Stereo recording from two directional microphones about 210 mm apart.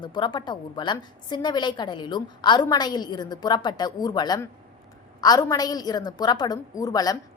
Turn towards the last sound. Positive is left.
turn(degrees=15)  # may be behind; listen again after turning